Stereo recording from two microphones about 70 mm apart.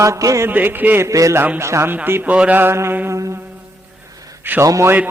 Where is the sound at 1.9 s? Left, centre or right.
Right.